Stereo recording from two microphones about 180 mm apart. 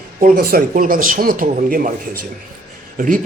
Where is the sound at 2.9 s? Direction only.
50° right (ahead or behind).